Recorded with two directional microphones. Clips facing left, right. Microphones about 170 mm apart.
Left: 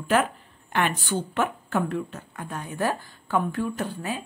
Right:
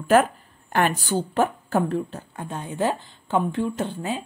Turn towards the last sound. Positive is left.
turn(degrees=-25)  # may be behind; listen again after turning